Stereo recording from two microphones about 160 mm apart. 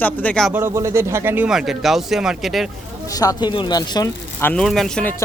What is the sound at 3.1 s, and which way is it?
Speech, 20° left (ahead or behind).